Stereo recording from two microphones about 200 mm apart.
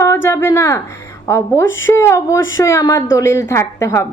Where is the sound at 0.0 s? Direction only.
15° left (ahead or behind).